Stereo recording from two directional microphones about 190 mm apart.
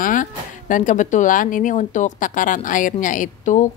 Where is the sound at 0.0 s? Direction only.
45° left (ahead or behind).